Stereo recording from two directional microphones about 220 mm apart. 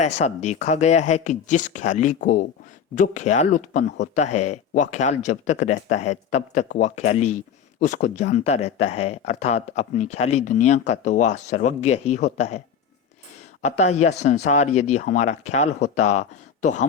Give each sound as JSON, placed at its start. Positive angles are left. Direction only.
{"t": 0.0, "sound": "speech", "side_deg": 30}